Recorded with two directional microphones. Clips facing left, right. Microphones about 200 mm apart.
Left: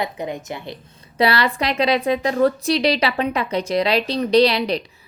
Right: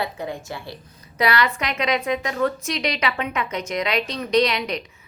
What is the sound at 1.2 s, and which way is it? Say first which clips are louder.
A woman's voice: left 3 dB; 30° left (ahead or behind).